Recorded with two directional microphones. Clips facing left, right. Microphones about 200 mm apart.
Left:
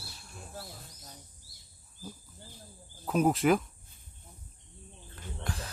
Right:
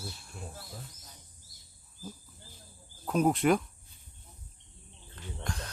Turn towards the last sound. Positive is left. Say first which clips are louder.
# even
turn(degrees=5)  # may be behind; listen again after turning